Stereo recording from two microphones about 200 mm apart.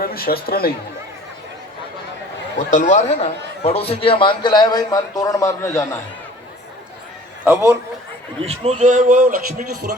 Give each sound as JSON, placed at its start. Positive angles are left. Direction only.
{"t": 0.0, "sound": "speech", "side_deg": 50}
{"t": 2.6, "sound": "a man's voice", "side_deg": 40}
{"t": 7.4, "sound": "a man's voice", "side_deg": -10}
{"t": 8.4, "sound": "a man's voice", "side_deg": -30}